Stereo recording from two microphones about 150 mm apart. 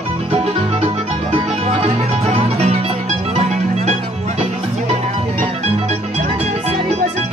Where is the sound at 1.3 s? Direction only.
45° right (ahead or behind).